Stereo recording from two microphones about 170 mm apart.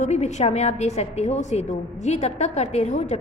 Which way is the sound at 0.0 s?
40° left (ahead or behind).